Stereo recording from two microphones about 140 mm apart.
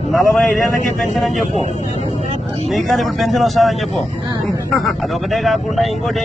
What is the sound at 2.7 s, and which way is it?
Speech, centre (ahead or behind).